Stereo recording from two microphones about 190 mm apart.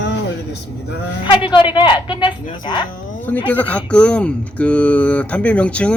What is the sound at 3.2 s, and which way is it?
A man's voice, 10° left (ahead or behind).